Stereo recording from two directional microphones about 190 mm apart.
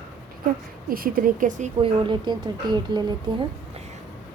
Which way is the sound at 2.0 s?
25° right (ahead or behind).